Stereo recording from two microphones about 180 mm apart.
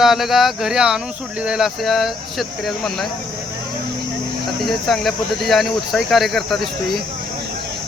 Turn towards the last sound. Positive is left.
turn(degrees=0)  # may be behind; listen again after turning